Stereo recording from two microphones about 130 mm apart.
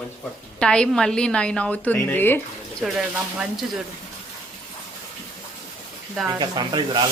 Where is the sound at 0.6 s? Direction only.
5° left (ahead or behind).